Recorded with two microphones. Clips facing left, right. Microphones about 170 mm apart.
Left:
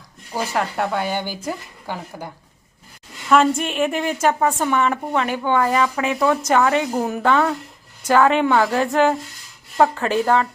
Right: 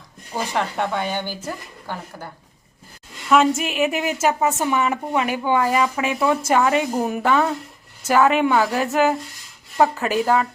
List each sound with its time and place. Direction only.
0.3 s speech: 5° left (ahead or behind)
3.2 s a woman's voice: 5° right (ahead or behind)